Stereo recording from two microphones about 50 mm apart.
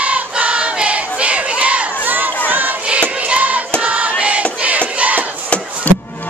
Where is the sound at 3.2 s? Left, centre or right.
Right.